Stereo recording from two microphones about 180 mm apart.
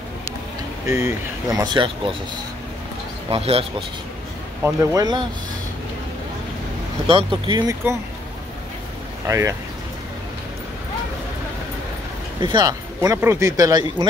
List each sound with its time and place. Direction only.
0.8 s speech: 15° right (ahead or behind)
3.3 s speech: 30° right (ahead or behind)
4.6 s speech: 20° right (ahead or behind)
7.1 s speech: 30° right (ahead or behind)
9.3 s speech: 15° right (ahead or behind)
12.4 s speech: 25° right (ahead or behind)